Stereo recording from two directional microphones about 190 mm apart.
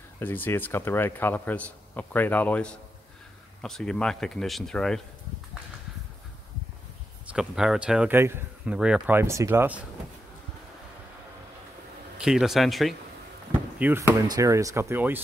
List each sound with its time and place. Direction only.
0.2 s speech: 10° left (ahead or behind)
7.3 s speech: 5° right (ahead or behind)
12.2 s speech: 5° right (ahead or behind)